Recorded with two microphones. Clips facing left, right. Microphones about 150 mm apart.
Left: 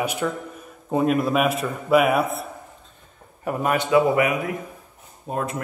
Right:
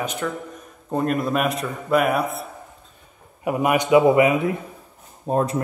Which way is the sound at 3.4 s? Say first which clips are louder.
Right 3 dB; 10° right (ahead or behind).